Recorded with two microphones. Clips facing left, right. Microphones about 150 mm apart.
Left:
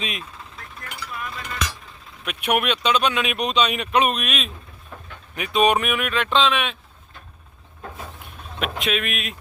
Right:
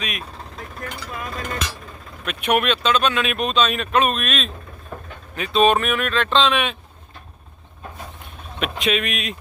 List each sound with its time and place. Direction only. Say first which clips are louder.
0.5 s speech: right 6 dB; 45° right (ahead or behind)
2.2 s speech: right 2 dB; 10° left (ahead or behind)
8.5 s speech: right 3 dB; centre (ahead or behind)